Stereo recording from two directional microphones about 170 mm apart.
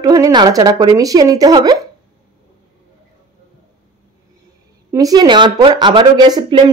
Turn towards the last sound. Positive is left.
turn(degrees=-25)  # may be behind; listen again after turning